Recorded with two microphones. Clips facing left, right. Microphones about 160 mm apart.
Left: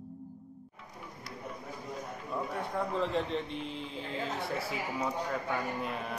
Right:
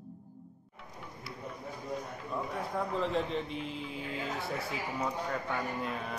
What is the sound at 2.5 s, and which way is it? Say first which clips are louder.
A man's voice: left 1 dB; centre (ahead or behind).